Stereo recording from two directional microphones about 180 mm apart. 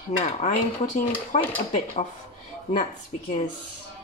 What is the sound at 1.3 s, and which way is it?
Speech, 40° left (ahead or behind).